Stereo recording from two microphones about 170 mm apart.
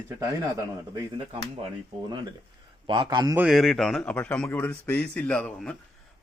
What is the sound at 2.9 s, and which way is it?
Speech, 25° right (ahead or behind).